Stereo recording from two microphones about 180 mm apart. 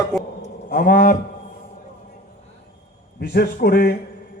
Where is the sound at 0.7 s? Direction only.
50° left (ahead or behind).